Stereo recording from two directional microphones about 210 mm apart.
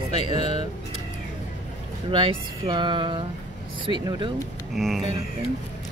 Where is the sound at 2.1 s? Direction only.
25° right (ahead or behind).